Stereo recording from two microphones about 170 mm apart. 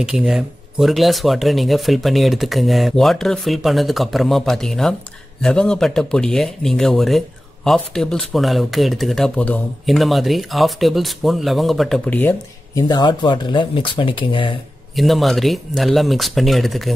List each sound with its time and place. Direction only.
0.0 s speech: 5° right (ahead or behind)
12.8 s speech: 25° left (ahead or behind)
15.0 s speech: centre (ahead or behind)